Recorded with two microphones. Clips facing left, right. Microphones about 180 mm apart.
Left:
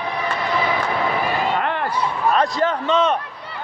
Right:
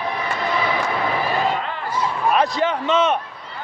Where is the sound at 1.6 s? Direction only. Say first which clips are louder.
Left 5 dB; 65° left (ahead or behind).